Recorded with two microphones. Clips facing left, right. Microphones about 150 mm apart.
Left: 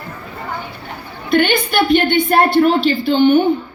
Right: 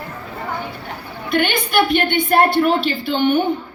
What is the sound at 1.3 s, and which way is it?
A woman's voice, 30° left (ahead or behind).